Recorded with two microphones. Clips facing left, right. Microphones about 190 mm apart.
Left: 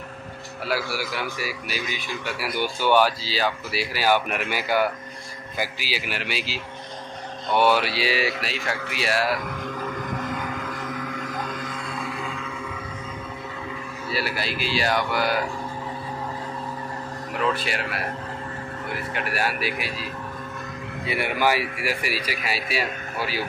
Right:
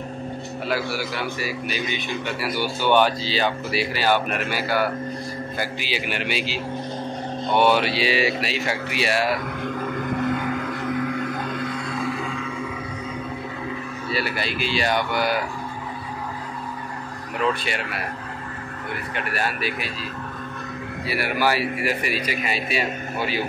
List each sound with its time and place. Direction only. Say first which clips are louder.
0.9 s speech: right 2 dB; 10° left (ahead or behind)
5.6 s speech: left 1 dB; 5° left (ahead or behind)
14.1 s speech: right 1 dB; 5° left (ahead or behind)
17.5 s speech: right 1 dB; centre (ahead or behind)
19.1 s speech: even; 10° left (ahead or behind)
21.1 s speech: even; 20° left (ahead or behind); by 23.4 s 5° left (ahead or behind)